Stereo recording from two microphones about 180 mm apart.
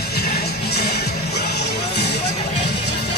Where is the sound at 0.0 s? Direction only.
60° left (ahead or behind).